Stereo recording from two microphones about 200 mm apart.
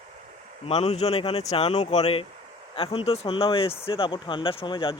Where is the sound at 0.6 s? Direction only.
30° left (ahead or behind).